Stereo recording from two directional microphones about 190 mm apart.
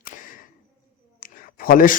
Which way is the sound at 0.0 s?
45° left (ahead or behind).